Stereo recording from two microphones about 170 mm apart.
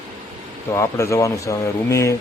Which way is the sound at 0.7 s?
20° left (ahead or behind).